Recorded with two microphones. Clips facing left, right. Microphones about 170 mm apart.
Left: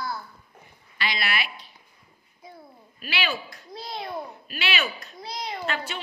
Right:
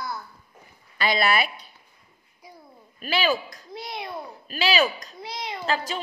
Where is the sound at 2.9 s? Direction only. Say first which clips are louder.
Right 6 dB; 40° right (ahead or behind).